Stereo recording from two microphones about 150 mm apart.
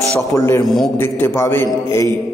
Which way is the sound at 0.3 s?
20° left (ahead or behind).